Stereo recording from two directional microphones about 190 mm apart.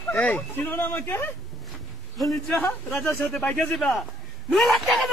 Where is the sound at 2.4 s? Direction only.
10° left (ahead or behind).